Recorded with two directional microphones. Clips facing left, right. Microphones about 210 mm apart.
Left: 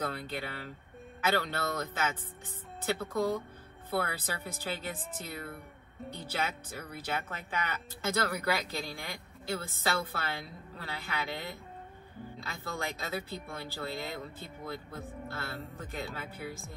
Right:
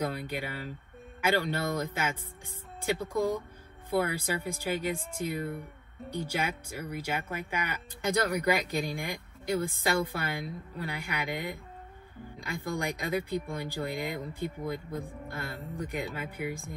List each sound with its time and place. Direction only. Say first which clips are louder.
0.0 s speech: right 3 dB; 15° right (ahead or behind)